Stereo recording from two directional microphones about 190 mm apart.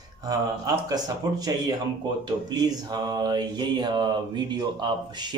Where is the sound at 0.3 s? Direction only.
20° right (ahead or behind).